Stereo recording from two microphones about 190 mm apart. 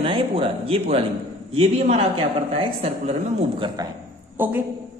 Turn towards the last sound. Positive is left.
turn(degrees=-10)  # may be behind; listen again after turning